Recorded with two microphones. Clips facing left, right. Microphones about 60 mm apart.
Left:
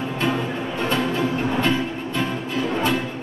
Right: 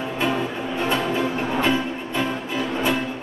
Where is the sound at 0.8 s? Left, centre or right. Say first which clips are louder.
Even; centre.